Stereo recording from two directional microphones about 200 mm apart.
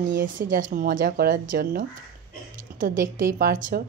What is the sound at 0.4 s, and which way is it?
Speech, 40° right (ahead or behind).